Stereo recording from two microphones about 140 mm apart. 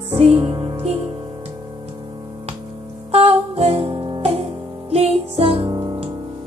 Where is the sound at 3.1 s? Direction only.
45° right (ahead or behind).